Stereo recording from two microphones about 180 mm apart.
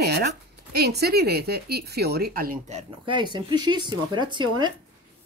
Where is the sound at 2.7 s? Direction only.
25° right (ahead or behind).